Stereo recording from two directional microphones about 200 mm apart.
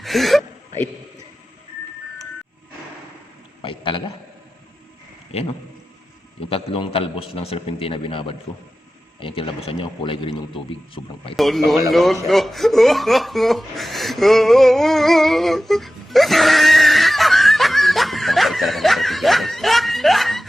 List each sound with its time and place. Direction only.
0.0 s gasp: centre (ahead or behind)
3.6 s a sound: 25° left (ahead or behind)
5.3 s a man's voice: 30° left (ahead or behind)
6.5 s a man's voice: 30° left (ahead or behind)
11.3 s speech: centre (ahead or behind)
12.3 s chuckle: centre (ahead or behind)